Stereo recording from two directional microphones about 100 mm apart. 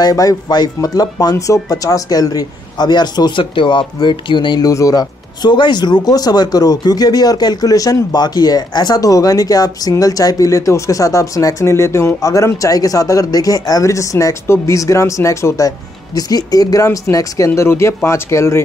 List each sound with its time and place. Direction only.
0.0 s a woman's voice: 35° left (ahead or behind); by 4.6 s 50° left (ahead or behind)
4.6 s speech: 35° left (ahead or behind)